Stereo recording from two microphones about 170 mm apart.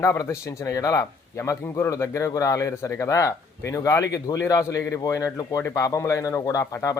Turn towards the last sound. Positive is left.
turn(degrees=20)  # may be behind; listen again after turning